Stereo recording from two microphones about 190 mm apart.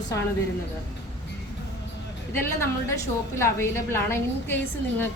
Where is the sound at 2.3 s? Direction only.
10° left (ahead or behind).